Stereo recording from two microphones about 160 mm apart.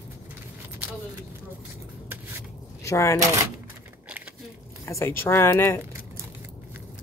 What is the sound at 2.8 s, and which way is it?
Speech, 20° left (ahead or behind).